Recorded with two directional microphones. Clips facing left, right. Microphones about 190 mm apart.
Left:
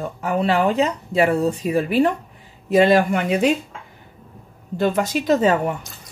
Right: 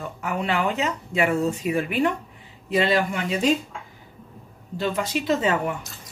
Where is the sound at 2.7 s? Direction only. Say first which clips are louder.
Left 7 dB; 45° left (ahead or behind).